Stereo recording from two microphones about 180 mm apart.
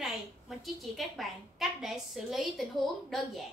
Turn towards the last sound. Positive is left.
turn(degrees=0)  # may be behind; listen again after turning